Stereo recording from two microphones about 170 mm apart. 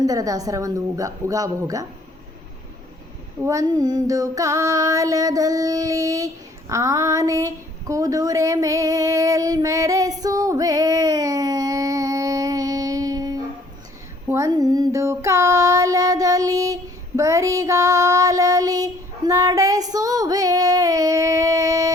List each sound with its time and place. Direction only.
0.0 s a woman's voice: 20° right (ahead or behind)
3.4 s child singing: 20° right (ahead or behind)
14.3 s a sound: 15° right (ahead or behind)